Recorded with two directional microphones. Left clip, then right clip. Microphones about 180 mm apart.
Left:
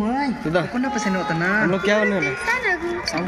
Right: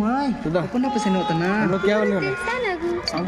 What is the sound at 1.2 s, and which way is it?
Speech, 40° right (ahead or behind).